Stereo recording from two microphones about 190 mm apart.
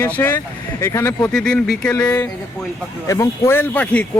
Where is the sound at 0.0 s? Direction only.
10° left (ahead or behind).